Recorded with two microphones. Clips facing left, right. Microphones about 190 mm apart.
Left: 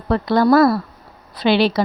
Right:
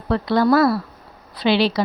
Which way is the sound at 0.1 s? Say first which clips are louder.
Left 2 dB; 45° left (ahead or behind).